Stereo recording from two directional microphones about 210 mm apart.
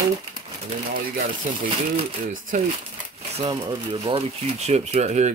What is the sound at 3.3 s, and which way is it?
Speech, 20° right (ahead or behind).